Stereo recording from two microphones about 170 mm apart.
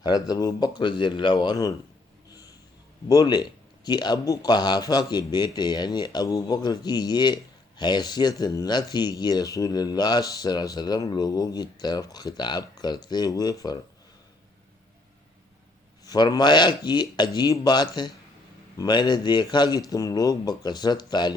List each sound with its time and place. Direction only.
0.0 s speech: 25° left (ahead or behind)
3.1 s speech: 25° left (ahead or behind)
16.0 s speech: 25° left (ahead or behind)